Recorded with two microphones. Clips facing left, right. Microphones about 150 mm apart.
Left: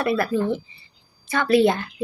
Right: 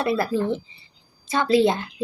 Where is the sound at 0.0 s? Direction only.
25° right (ahead or behind).